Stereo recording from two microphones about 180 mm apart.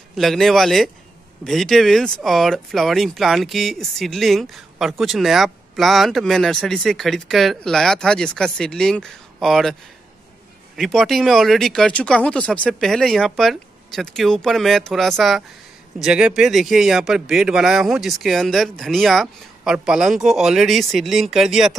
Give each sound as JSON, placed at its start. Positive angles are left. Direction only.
{"t": 0.1, "sound": "speech", "side_deg": 0}
{"t": 10.8, "sound": "speech", "side_deg": 0}